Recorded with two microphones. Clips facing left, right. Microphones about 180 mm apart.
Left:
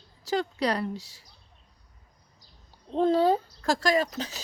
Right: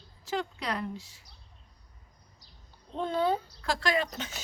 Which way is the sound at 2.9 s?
35° left (ahead or behind).